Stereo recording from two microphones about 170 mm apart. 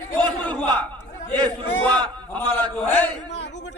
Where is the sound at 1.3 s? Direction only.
10° left (ahead or behind).